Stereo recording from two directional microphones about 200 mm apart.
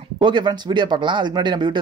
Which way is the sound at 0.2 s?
25° right (ahead or behind).